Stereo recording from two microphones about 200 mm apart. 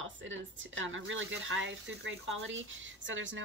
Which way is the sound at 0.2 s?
70° right (ahead or behind).